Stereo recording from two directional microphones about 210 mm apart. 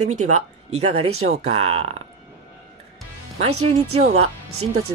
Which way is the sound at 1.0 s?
90° right.